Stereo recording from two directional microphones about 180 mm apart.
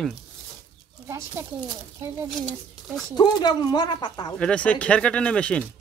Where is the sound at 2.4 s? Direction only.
Centre (ahead or behind).